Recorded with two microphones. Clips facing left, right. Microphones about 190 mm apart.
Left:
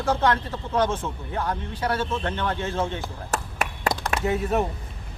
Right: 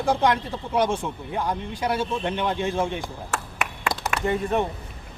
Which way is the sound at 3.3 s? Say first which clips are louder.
Left 5 dB; 40° left (ahead or behind).